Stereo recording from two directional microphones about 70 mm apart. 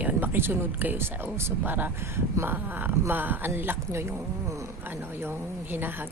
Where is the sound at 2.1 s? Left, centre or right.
Right.